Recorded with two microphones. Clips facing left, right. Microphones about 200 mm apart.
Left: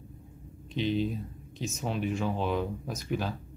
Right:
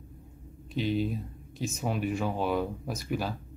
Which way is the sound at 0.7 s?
5° right (ahead or behind).